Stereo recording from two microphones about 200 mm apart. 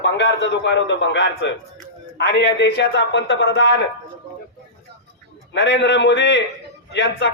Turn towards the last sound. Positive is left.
turn(degrees=60)  # may be behind; listen again after turning